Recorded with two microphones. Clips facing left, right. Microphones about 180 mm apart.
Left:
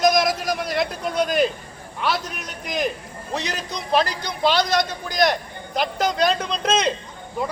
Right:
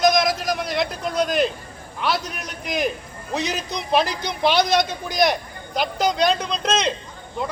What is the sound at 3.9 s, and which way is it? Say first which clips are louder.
Speech: even; 15° right (ahead or behind).